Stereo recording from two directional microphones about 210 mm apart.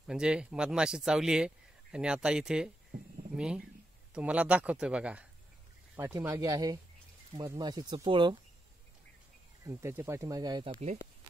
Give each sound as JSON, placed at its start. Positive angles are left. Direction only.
{"t": 0.0, "sound": "speech", "side_deg": -5}
{"t": 9.7, "sound": "speech", "side_deg": -15}